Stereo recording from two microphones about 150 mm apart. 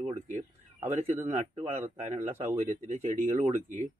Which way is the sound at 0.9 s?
45° right (ahead or behind).